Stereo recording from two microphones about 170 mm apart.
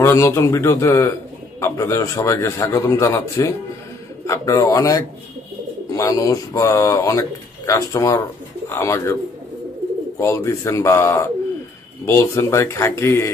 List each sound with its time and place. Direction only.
0.0 s a man's voice: 15° left (ahead or behind)
10.1 s a man's voice: 15° left (ahead or behind)